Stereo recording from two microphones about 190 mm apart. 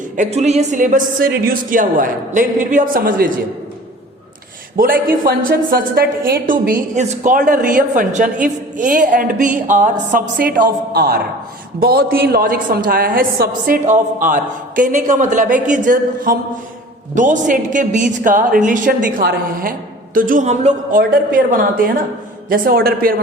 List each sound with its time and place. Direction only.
0.2 s a woman's voice: 35° right (ahead or behind)
4.8 s a woman's voice: 50° right (ahead or behind)
21.0 s a woman's voice: 50° right (ahead or behind)